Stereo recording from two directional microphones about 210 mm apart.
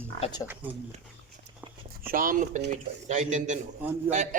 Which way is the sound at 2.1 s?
40° right (ahead or behind).